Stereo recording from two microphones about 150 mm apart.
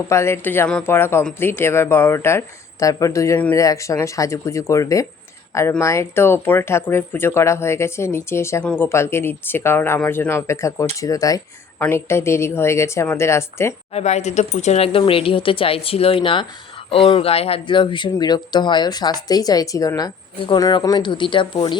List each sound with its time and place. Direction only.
0.1 s speech: 15° left (ahead or behind)
13.9 s speech: 50° left (ahead or behind); by 21.8 s 30° left (ahead or behind)